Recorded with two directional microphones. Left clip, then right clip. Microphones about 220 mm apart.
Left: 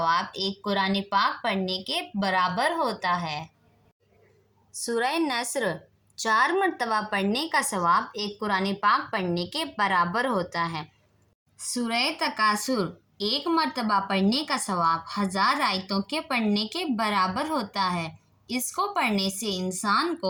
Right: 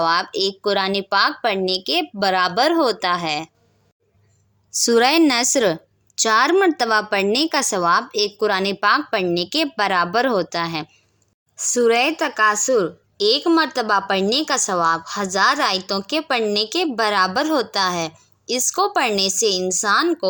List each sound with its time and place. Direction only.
0.0 s a woman's voice: 45° right (ahead or behind)
4.9 s a woman's voice: 45° right (ahead or behind)